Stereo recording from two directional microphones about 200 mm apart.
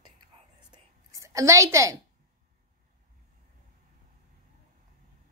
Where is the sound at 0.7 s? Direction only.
15° right (ahead or behind).